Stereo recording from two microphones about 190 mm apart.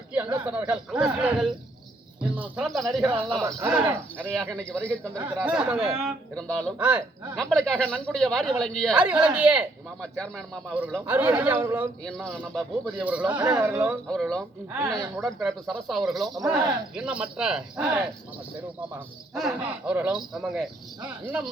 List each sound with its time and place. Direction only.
0.3 s speech: 5° right (ahead or behind)
2.6 s speech: centre (ahead or behind)
3.0 s speech: 25° right (ahead or behind)
3.4 s speech: 10° right (ahead or behind)
4.4 s speech: 5° left (ahead or behind)
5.4 s speech: 5° right (ahead or behind)
7.5 s speech: 5° left (ahead or behind)
7.9 s speech: 10° right (ahead or behind)
8.1 s speech: 5° left (ahead or behind)
12.0 s speech: 5° left (ahead or behind); by 13.9 s 15° right (ahead or behind)
14.1 s speech: centre (ahead or behind)
14.7 s speech: 10° right (ahead or behind)
19.3 s speech: centre (ahead or behind)